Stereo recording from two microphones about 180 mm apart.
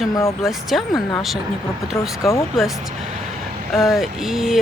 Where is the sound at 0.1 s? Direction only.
15° left (ahead or behind).